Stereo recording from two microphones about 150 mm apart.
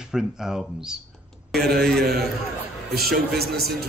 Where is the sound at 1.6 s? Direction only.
90° right.